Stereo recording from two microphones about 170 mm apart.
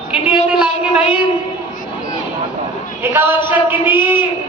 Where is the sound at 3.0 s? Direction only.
15° right (ahead or behind).